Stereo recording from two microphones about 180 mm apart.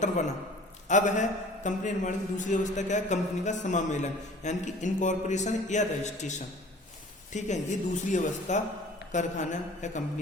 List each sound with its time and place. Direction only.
0.9 s a man's voice: 45° left (ahead or behind)
7.3 s a man's voice: 40° left (ahead or behind)
9.1 s a sound: 45° left (ahead or behind)